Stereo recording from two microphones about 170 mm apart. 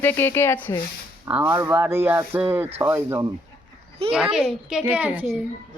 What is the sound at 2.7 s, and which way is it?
Speech, 35° right (ahead or behind).